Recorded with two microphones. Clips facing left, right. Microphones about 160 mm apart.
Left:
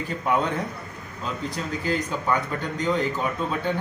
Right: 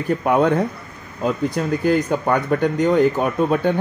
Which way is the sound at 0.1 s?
60° right (ahead or behind).